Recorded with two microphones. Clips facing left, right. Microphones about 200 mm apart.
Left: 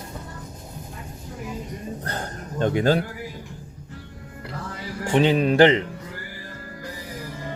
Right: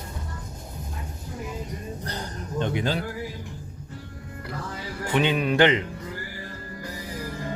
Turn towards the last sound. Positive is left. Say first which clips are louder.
# left 4 dB
turn(degrees=30)  # may be behind; listen again after turning